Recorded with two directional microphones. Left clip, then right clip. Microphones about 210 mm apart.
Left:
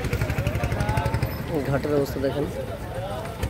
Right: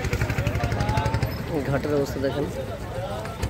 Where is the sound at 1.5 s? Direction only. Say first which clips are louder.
Left 1 dB; 10° left (ahead or behind).